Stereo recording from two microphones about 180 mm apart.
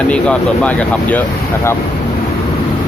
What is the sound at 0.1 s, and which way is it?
Speech, 5° left (ahead or behind).